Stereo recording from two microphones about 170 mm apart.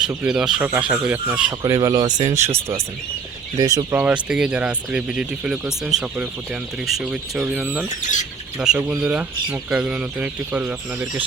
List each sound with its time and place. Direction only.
0.3 s speech: 5° right (ahead or behind); by 3.8 s 25° right (ahead or behind)
3.9 s speech: 10° right (ahead or behind)